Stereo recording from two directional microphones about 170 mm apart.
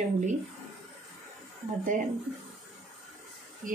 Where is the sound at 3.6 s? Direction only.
50° right (ahead or behind).